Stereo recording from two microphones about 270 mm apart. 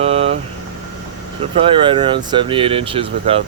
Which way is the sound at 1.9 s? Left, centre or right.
Centre.